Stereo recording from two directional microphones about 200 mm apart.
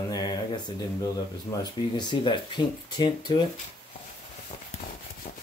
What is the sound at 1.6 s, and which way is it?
Speech, 20° left (ahead or behind).